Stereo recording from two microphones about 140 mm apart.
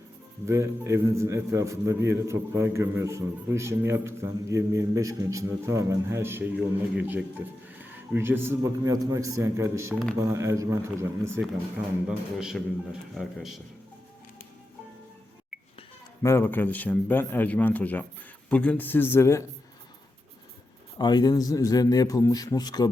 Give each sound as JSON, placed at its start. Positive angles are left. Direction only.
{"t": 0.4, "sound": "a man's voice", "side_deg": -20}
{"t": 12.0, "sound": "a man's voice", "side_deg": -5}
{"t": 16.2, "sound": "a man's voice", "side_deg": 15}
{"t": 21.0, "sound": "a man's voice", "side_deg": 30}